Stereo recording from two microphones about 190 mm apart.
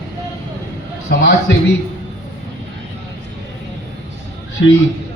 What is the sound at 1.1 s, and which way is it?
Speech, 65° left (ahead or behind).